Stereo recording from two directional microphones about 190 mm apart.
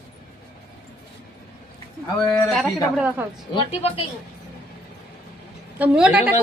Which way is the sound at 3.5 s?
30° left (ahead or behind).